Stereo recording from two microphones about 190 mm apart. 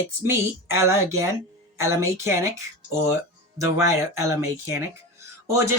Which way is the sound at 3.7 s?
15° right (ahead or behind).